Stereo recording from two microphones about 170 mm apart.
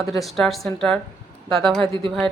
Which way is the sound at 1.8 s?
30° right (ahead or behind).